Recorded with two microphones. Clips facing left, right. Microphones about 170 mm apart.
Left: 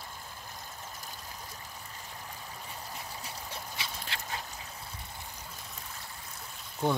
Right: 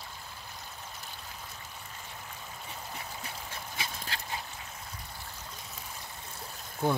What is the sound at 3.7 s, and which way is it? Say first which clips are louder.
Dog: right 1 dB; 40° right (ahead or behind).